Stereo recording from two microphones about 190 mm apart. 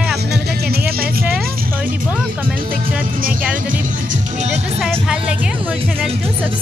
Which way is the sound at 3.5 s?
45° right (ahead or behind).